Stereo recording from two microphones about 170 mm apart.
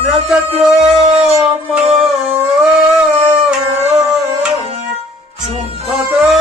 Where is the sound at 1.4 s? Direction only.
5° right (ahead or behind).